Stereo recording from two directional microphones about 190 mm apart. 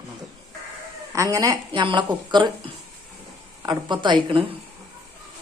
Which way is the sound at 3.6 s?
20° right (ahead or behind).